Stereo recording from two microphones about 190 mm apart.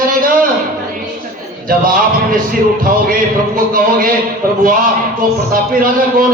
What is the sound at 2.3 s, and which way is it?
Speech, 50° right (ahead or behind).